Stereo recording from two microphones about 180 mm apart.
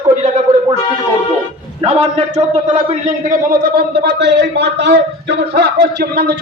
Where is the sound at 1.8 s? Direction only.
35° right (ahead or behind).